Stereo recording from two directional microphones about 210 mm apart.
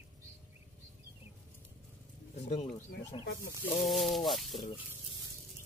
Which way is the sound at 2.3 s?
30° left (ahead or behind).